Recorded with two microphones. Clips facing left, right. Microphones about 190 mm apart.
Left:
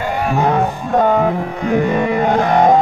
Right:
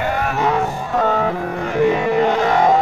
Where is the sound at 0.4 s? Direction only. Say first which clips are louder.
Left 4 dB; 55° left (ahead or behind).